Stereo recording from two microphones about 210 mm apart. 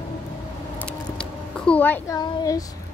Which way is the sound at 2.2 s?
15° left (ahead or behind).